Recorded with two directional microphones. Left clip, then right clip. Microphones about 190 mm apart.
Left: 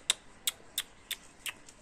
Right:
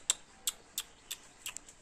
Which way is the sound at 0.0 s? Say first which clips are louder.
Left 4 dB; 5° left (ahead or behind).